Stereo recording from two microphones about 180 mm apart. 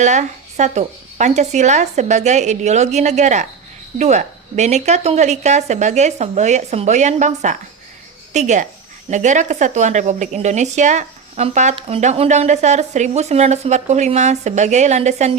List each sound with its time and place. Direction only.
0.0 s a woman's voice: 40° right (ahead or behind)